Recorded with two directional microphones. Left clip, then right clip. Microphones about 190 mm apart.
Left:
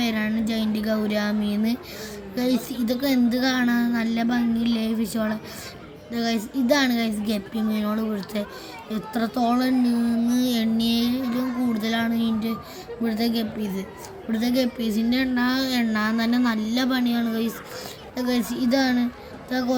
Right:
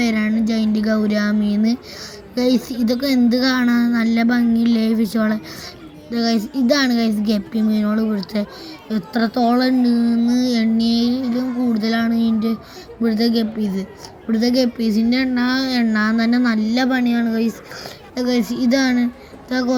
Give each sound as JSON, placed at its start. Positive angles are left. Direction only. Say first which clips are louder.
{"t": 0.0, "sound": "a woman's voice", "louder": "right 6 dB", "side_deg": -10}
{"t": 10.4, "sound": "a sound", "louder": "right 5 dB", "side_deg": -5}
{"t": 11.3, "sound": "a woman's voice", "louder": "right 5 dB", "side_deg": -5}